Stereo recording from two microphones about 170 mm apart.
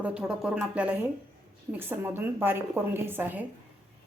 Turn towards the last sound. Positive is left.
turn(degrees=-10)  # may be behind; listen again after turning